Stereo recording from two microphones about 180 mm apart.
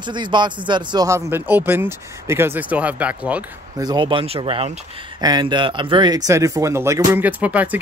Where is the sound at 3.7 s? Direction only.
25° right (ahead or behind).